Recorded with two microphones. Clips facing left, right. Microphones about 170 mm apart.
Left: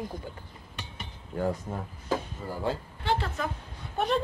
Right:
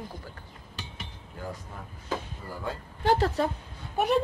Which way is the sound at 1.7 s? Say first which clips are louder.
Left 8 dB; 40° left (ahead or behind).